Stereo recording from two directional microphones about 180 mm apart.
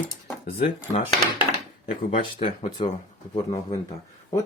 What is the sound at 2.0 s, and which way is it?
Speech, 30° left (ahead or behind).